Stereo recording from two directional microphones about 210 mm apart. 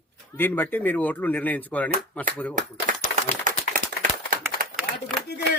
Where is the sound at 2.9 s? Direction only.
40° right (ahead or behind).